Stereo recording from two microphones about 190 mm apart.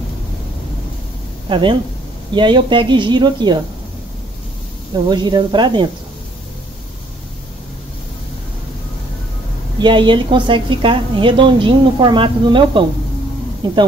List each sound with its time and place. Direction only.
1.5 s speech: 25° right (ahead or behind)
5.1 s speech: 25° right (ahead or behind)
9.8 s speech: 25° right (ahead or behind)